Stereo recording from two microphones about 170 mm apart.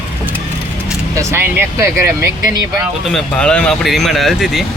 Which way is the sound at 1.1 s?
15° right (ahead or behind).